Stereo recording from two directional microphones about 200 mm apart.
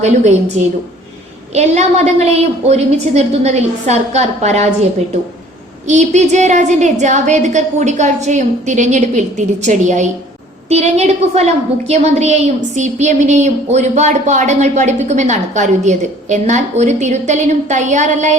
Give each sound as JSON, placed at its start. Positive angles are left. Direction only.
{"t": 0.6, "sound": "a woman's voice", "side_deg": -35}
{"t": 5.9, "sound": "a woman's voice", "side_deg": -35}